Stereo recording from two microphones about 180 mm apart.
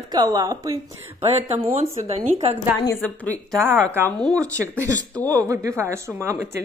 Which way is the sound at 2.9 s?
10° left (ahead or behind).